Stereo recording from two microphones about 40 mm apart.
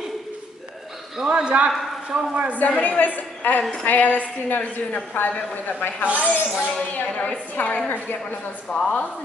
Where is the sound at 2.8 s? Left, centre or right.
Left.